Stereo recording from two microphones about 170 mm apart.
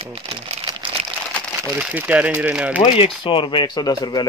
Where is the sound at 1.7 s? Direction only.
10° right (ahead or behind).